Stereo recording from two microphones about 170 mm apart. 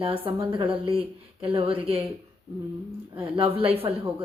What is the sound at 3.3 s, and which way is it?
Speech, 30° right (ahead or behind).